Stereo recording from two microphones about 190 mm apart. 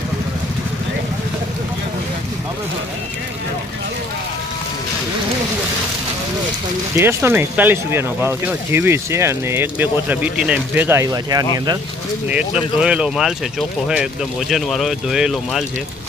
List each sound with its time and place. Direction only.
7.0 s speech: 15° right (ahead or behind)
12.8 s speech: 5° right (ahead or behind)